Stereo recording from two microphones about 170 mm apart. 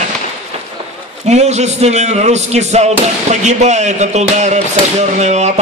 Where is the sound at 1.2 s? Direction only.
40° right (ahead or behind).